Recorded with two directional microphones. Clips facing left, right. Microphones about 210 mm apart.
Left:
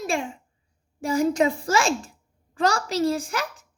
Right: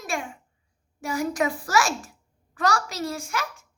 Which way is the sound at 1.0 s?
30° left (ahead or behind).